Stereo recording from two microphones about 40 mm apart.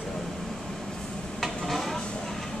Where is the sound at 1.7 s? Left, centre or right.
Centre.